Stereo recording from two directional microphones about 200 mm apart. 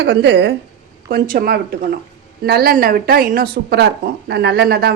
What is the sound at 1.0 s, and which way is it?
Speech, 45° right (ahead or behind).